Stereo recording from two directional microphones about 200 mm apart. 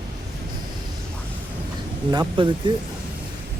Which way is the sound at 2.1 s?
20° right (ahead or behind).